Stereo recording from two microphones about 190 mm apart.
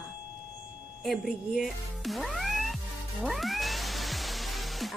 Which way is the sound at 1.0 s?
Centre (ahead or behind).